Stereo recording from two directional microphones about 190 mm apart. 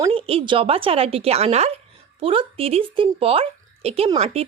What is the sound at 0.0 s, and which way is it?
Speech, 30° right (ahead or behind).